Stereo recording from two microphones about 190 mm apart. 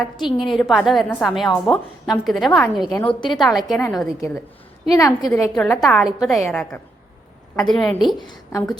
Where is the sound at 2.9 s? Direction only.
20° left (ahead or behind).